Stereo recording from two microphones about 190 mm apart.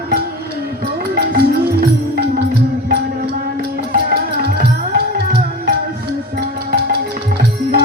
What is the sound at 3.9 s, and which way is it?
Music, 55° right (ahead or behind).